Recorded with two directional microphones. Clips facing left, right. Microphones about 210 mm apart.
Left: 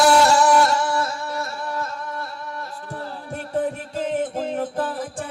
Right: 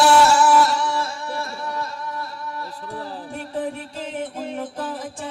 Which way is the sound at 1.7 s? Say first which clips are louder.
Even; 50° left (ahead or behind).